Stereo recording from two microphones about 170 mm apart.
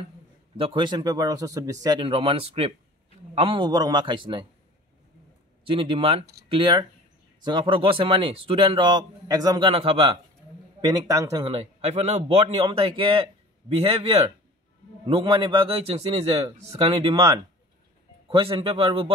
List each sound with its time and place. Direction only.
0.6 s speech: 30° right (ahead or behind)
5.6 s a man's voice: 30° right (ahead or behind)
10.8 s speech: 20° right (ahead or behind)
11.4 s a man's voice: 35° right (ahead or behind)
17.1 s speech: 20° right (ahead or behind)
18.3 s a man's voice: 30° right (ahead or behind)